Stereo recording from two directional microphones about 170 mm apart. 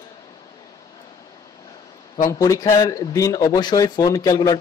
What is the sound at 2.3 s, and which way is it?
Speech, 20° left (ahead or behind).